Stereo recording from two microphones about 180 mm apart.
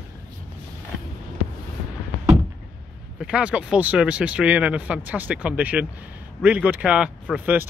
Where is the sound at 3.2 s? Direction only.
5° right (ahead or behind).